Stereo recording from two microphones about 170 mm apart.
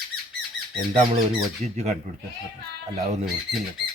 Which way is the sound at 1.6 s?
40° right (ahead or behind).